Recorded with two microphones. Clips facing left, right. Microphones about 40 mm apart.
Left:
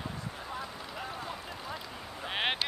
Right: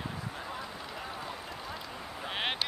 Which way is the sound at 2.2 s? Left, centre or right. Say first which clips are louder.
Left 2 dB; centre.